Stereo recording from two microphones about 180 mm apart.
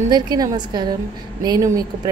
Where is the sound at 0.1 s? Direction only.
25° right (ahead or behind).